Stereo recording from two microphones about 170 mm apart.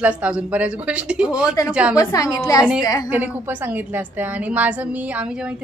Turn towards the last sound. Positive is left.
turn(degrees=-5)  # may be behind; listen again after turning